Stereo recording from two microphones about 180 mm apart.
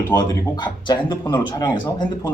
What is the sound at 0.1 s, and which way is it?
A man's voice, 25° left (ahead or behind).